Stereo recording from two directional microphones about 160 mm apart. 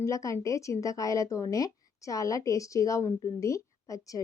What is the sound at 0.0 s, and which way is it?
A woman's voice, 20° left (ahead or behind).